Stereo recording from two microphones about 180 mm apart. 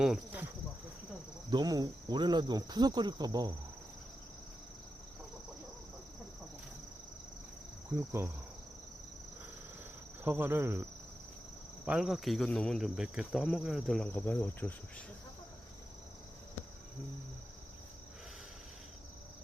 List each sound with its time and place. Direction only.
0.0 s cricket: 5° right (ahead or behind)
1.5 s cricket: 20° right (ahead or behind)
7.9 s speech: 15° right (ahead or behind)
10.2 s speech: 10° right (ahead or behind)
11.9 s cricket: centre (ahead or behind)